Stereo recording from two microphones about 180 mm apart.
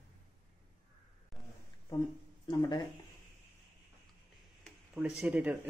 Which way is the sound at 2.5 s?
25° left (ahead or behind).